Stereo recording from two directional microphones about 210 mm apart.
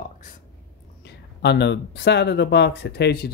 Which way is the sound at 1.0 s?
55° left (ahead or behind).